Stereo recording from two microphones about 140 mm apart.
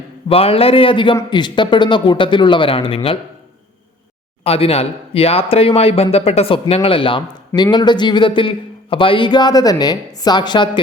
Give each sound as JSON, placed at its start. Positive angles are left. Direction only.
{"t": 0.3, "sound": "a man's voice", "side_deg": 45}
{"t": 4.4, "sound": "speech", "side_deg": 45}